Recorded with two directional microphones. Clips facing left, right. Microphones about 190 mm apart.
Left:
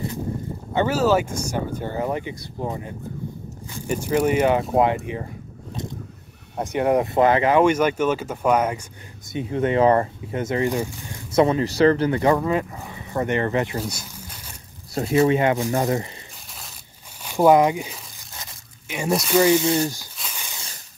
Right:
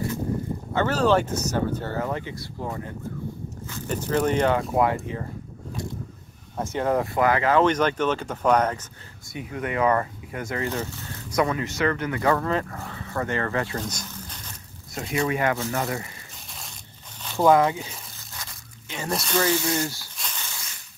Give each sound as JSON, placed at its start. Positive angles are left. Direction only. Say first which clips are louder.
{"t": 0.7, "sound": "speech", "louder": "left 2 dB", "side_deg": 10}
{"t": 4.6, "sound": "speech", "louder": "left 3 dB", "side_deg": 20}
{"t": 6.5, "sound": "speech", "louder": "left 4 dB", "side_deg": 15}
{"t": 9.3, "sound": "speech", "louder": "left 8 dB", "side_deg": 25}
{"t": 11.3, "sound": "speech", "louder": "left 6 dB", "side_deg": 30}
{"t": 12.2, "sound": "speech", "louder": "left 3 dB", "side_deg": 15}
{"t": 15.0, "sound": "speech", "louder": "left 7 dB", "side_deg": 35}
{"t": 17.2, "sound": "speech", "louder": "left 3 dB", "side_deg": 15}
{"t": 18.4, "sound": "crunch", "louder": "even", "side_deg": 15}
{"t": 19.0, "sound": "speech", "louder": "left 7 dB", "side_deg": 5}
{"t": 20.2, "sound": "snake", "louder": "left 1 dB", "side_deg": 10}